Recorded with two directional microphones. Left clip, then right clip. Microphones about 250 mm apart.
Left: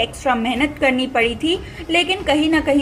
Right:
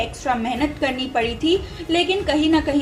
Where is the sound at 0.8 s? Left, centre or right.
Left.